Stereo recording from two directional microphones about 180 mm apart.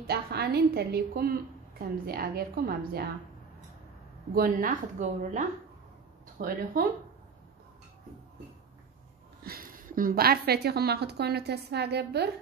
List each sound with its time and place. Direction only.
0.0 s a woman's voice: 60° right (ahead or behind)
4.3 s speech: 50° right (ahead or behind)
6.3 s speech: 55° right (ahead or behind)
9.4 s a woman's voice: 55° right (ahead or behind)